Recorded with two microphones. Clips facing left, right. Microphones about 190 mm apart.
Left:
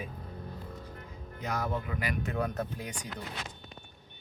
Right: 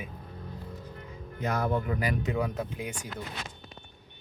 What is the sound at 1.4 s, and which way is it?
Speech, 55° right (ahead or behind).